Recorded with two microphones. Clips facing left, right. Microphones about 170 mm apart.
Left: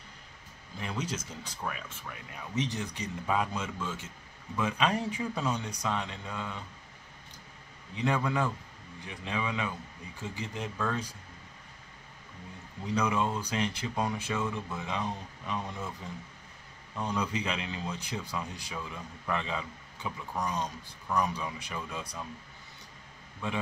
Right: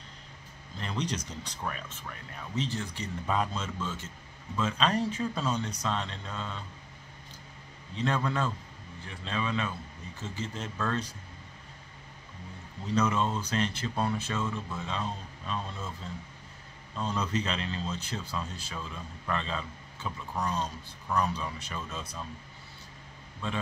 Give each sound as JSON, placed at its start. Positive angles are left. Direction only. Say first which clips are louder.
{"t": 0.7, "sound": "speech", "louder": "right 2 dB", "side_deg": 10}
{"t": 2.5, "sound": "speech", "louder": "even", "side_deg": 15}
{"t": 7.9, "sound": "speech", "louder": "even", "side_deg": 15}
{"t": 12.8, "sound": "speech", "louder": "right 1 dB", "side_deg": 10}
{"t": 23.4, "sound": "speech", "louder": "even", "side_deg": 15}